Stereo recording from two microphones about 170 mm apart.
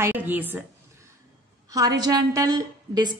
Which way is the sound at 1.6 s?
20° right (ahead or behind).